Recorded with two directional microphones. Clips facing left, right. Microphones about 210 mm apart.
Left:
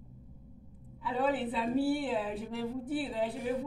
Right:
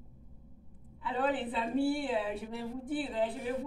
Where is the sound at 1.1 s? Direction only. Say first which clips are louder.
Left 1 dB; 5° left (ahead or behind).